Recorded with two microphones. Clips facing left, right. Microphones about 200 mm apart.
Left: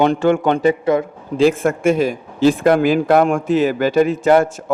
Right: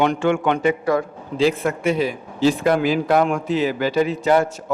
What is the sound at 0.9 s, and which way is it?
Speech, 20° left (ahead or behind).